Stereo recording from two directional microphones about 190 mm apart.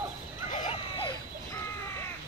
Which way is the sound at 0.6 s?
30° left (ahead or behind).